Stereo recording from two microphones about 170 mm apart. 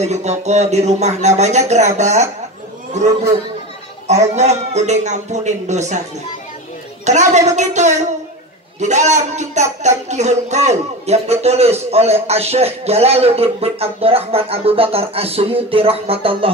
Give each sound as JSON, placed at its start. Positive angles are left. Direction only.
{"t": 0.0, "sound": "a man's voice", "side_deg": -40}
{"t": 7.1, "sound": "a man's voice", "side_deg": -45}